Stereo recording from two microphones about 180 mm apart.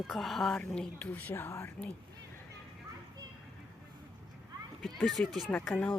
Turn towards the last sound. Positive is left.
turn(degrees=5)  # may be behind; listen again after turning